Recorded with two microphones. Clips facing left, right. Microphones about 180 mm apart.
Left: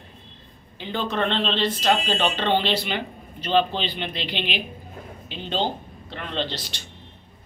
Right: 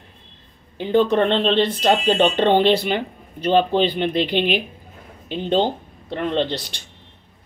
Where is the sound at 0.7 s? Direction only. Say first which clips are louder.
Right 10 dB; 50° right (ahead or behind).